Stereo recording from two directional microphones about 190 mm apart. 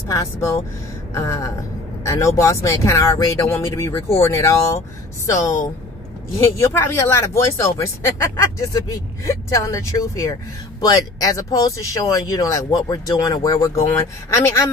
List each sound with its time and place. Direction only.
0.1 s speech: 15° left (ahead or behind)